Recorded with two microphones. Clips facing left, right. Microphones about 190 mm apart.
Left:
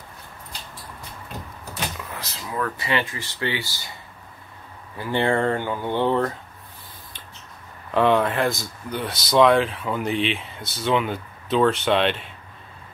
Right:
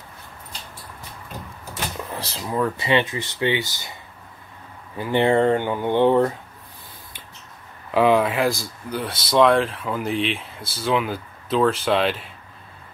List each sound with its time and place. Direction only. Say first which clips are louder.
2.1 s speech: right 6 dB; 30° right (ahead or behind)
4.9 s speech: right 4 dB; 15° right (ahead or behind)
7.9 s speech: right 2 dB; 5° right (ahead or behind)